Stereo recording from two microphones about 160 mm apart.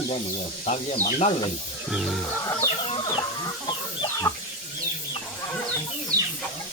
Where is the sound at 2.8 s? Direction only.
35° left (ahead or behind).